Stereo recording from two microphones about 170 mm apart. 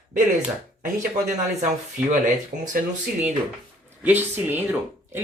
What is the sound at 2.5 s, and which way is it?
Speech, 90° right.